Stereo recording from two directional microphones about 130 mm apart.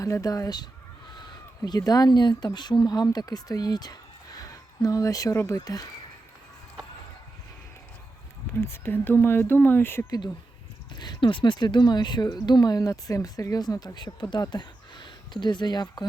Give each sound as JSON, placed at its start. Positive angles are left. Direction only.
{"t": 0.0, "sound": "speech", "side_deg": 25}
{"t": 8.6, "sound": "speech", "side_deg": 15}
{"t": 10.1, "sound": "speech", "side_deg": 30}